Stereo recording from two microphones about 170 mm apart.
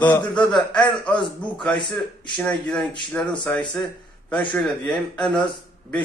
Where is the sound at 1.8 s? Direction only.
30° left (ahead or behind).